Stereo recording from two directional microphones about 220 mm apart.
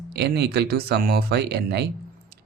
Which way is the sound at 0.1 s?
50° right (ahead or behind).